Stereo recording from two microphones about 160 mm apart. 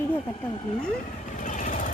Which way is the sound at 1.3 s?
50° left (ahead or behind).